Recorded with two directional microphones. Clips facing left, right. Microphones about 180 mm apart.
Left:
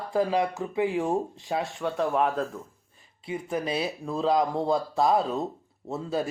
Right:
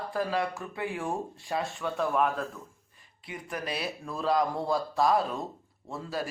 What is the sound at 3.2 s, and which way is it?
Speech, 25° left (ahead or behind).